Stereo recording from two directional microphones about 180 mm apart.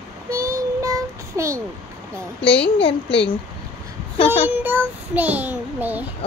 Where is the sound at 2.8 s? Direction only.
30° left (ahead or behind).